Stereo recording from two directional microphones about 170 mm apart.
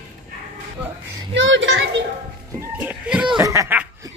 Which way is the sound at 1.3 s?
90° right.